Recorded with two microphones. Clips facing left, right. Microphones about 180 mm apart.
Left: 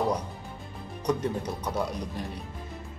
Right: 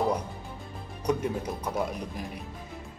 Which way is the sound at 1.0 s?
5° right (ahead or behind).